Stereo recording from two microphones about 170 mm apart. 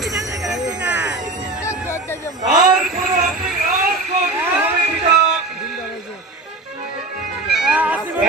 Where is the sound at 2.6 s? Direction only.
Centre (ahead or behind).